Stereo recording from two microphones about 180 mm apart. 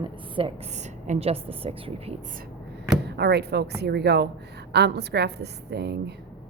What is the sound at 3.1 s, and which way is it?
A woman's voice, 65° right (ahead or behind).